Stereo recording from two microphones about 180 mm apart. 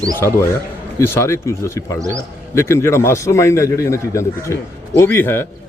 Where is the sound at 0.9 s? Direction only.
15° left (ahead or behind).